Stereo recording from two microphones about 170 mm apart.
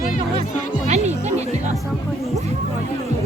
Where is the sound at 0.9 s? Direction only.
40° right (ahead or behind).